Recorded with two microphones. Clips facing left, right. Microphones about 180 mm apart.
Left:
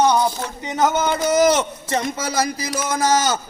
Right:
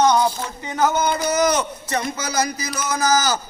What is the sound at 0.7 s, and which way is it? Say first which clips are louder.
A man's voice: left 1 dB; 25° left (ahead or behind).